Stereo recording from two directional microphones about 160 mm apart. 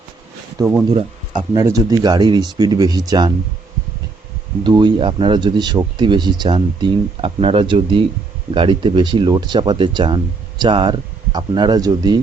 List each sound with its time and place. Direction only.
0.6 s speech: 10° right (ahead or behind)
1.5 s speech: 20° right (ahead or behind)
4.6 s speech: 25° right (ahead or behind)